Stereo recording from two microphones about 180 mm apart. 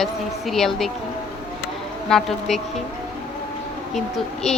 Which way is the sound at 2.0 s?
5° left (ahead or behind).